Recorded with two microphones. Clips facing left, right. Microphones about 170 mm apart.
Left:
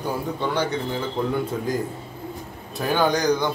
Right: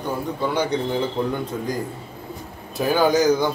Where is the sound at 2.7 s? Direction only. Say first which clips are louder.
Right 3 dB; 5° right (ahead or behind).